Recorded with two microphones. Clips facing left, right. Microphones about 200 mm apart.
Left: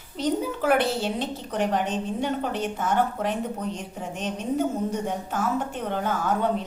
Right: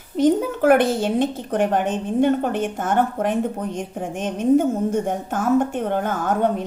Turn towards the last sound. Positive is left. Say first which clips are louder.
# right 4 dB
turn(degrees=-50)  # may be behind; listen again after turning